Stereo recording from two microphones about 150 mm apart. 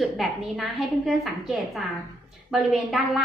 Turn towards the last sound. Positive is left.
turn(degrees=0)  # may be behind; listen again after turning